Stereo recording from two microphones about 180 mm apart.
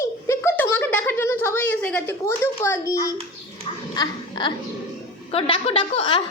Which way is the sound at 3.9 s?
25° left (ahead or behind).